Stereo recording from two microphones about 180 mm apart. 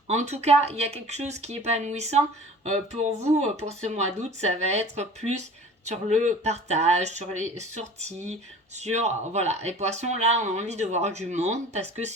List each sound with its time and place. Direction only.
0.1 s speech: 40° right (ahead or behind)
3.3 s speech: 35° right (ahead or behind)